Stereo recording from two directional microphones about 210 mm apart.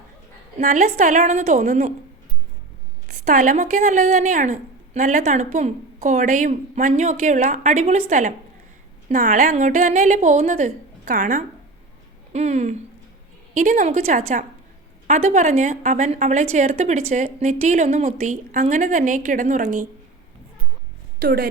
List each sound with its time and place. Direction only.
0.6 s a woman's voice: 35° right (ahead or behind)
3.2 s a woman's voice: 35° right (ahead or behind)
21.2 s speech: 45° right (ahead or behind)